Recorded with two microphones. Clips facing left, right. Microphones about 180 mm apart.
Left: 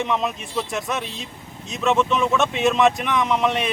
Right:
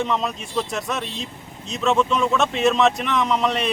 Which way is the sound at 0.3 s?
Centre (ahead or behind).